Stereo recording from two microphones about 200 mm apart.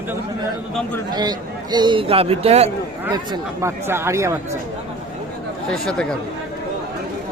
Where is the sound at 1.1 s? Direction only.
20° right (ahead or behind).